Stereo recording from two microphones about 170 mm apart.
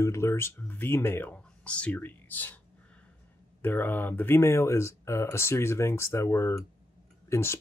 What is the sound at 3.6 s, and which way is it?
Speech, 10° left (ahead or behind).